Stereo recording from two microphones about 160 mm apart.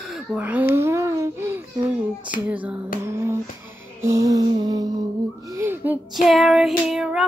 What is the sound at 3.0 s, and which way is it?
Music, 15° right (ahead or behind).